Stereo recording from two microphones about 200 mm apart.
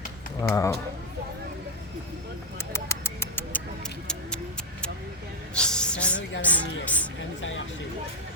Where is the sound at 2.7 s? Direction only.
15° left (ahead or behind).